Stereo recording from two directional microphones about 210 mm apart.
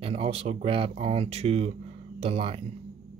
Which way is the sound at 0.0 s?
30° right (ahead or behind).